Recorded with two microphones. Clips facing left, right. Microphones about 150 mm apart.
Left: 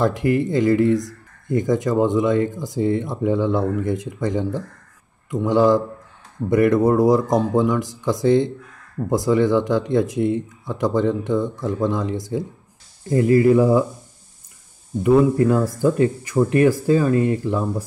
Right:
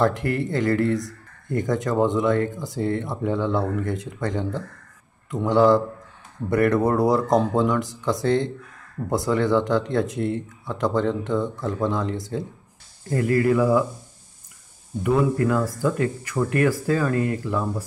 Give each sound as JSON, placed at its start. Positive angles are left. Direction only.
{"t": 0.0, "sound": "speech", "side_deg": 15}
{"t": 15.0, "sound": "speech", "side_deg": 25}